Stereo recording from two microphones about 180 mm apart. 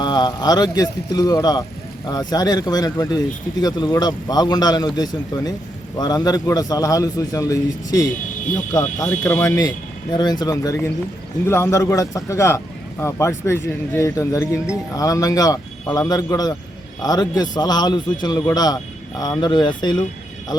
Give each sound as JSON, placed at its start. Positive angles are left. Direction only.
{"t": 0.0, "sound": "a man's voice", "side_deg": 25}